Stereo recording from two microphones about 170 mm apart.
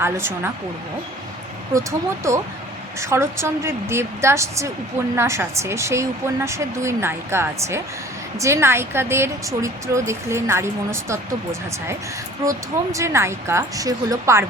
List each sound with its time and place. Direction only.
0.0 s a woman's voice: 15° right (ahead or behind)
2.3 s a woman's voice: 15° right (ahead or behind)
12.5 s a woman's voice: 20° right (ahead or behind)